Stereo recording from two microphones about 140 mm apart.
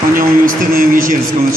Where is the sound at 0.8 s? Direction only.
80° right.